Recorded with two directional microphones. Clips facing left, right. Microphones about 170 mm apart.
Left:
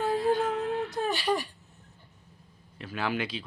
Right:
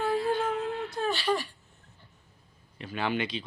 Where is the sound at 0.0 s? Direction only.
15° left (ahead or behind).